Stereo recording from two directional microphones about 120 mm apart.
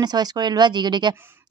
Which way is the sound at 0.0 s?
35° right (ahead or behind).